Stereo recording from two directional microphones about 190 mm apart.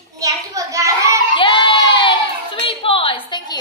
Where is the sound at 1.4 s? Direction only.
25° left (ahead or behind).